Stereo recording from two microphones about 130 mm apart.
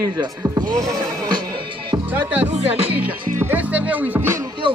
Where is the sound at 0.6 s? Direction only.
30° right (ahead or behind).